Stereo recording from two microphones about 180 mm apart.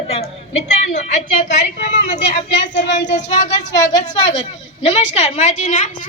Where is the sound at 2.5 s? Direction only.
80° left.